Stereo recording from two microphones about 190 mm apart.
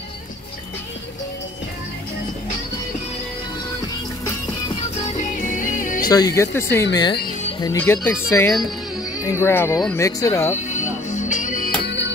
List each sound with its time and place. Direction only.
5.0 s music: 40° left (ahead or behind)
6.0 s speech: 20° left (ahead or behind)
8.5 s music: centre (ahead or behind)
9.2 s speech: 15° left (ahead or behind)
10.5 s music: 40° left (ahead or behind)
11.8 s music: 65° left (ahead or behind)